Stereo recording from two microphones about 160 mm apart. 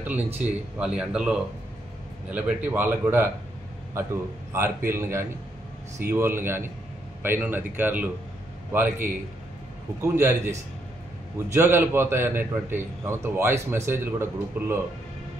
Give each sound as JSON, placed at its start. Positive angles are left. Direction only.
{"t": 0.0, "sound": "a man's voice", "side_deg": -10}
{"t": 4.5, "sound": "a man's voice", "side_deg": -15}
{"t": 10.1, "sound": "a man's voice", "side_deg": -15}
{"t": 11.5, "sound": "a man's voice", "side_deg": -15}